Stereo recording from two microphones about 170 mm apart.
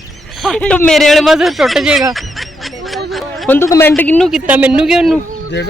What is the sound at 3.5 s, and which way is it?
Speech, 15° left (ahead or behind).